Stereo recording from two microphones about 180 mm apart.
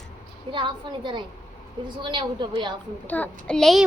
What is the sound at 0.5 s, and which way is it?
A woman's voice, 25° right (ahead or behind).